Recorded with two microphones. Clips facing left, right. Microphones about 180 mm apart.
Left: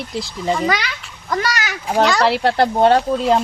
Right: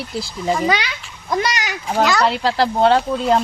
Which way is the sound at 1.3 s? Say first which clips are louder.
Right 1 dB; 15° right (ahead or behind).